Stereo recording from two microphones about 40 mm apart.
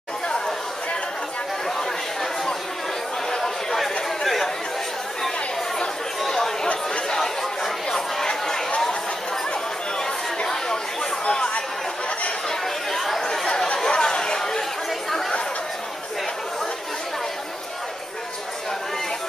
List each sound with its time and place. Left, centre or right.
3.3 s chatter: centre
5.8 s chatter: centre
10.4 s chatter: centre
12.4 s chatter: centre
13.5 s chatter: left; by 15.3 s centre